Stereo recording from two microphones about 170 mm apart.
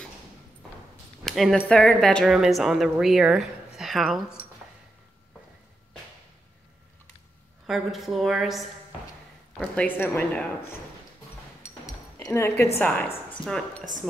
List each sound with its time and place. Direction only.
1.2 s a woman's voice: centre (ahead or behind)
7.6 s a woman's voice: centre (ahead or behind)
11.6 s a sound: 15° left (ahead or behind)
12.6 s speech: 10° left (ahead or behind)